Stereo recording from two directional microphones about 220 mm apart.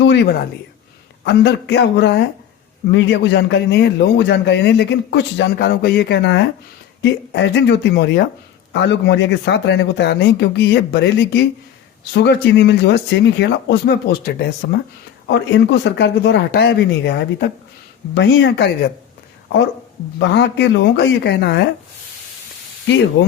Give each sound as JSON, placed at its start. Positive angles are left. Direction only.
{"t": 0.0, "sound": "a sound", "side_deg": 50}
{"t": 1.2, "sound": "a man's voice", "side_deg": 50}
{"t": 20.1, "sound": "a man's voice", "side_deg": 50}
{"t": 23.2, "sound": "a man's voice", "side_deg": 55}